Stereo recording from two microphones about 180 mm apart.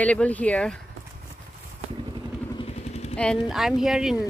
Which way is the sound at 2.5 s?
35° left (ahead or behind).